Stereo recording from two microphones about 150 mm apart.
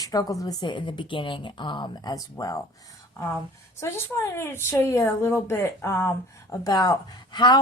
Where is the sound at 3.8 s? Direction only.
15° left (ahead or behind).